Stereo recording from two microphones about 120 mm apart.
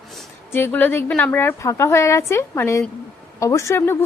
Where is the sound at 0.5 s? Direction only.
15° left (ahead or behind).